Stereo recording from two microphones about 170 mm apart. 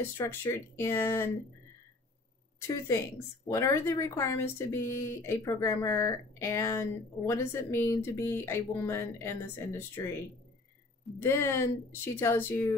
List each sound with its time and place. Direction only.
0.2 s speech: 15° left (ahead or behind)
3.4 s speech: 20° left (ahead or behind)
11.1 s speech: 15° left (ahead or behind)